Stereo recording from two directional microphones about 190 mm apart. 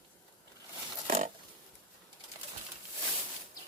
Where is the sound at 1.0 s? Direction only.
40° right (ahead or behind).